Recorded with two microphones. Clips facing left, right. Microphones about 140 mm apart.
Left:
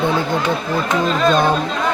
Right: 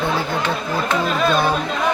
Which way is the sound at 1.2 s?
5° right (ahead or behind).